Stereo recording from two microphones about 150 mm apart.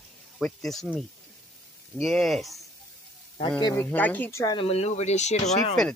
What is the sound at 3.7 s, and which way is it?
Speech, 15° left (ahead or behind).